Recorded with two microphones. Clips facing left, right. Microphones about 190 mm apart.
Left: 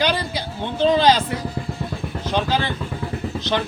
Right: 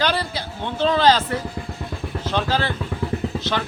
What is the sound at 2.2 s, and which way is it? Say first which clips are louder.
Speech: left 1 dB; 15° left (ahead or behind).